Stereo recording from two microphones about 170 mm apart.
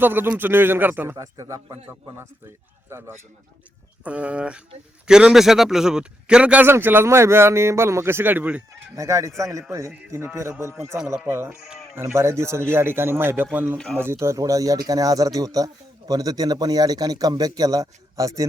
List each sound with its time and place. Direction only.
0.0 s a man's voice: 10° right (ahead or behind)
4.0 s a man's voice: 5° right (ahead or behind)